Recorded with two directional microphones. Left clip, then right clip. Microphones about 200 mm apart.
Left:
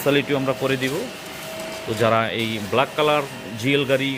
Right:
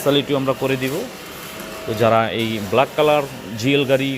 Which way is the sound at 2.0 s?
20° right (ahead or behind).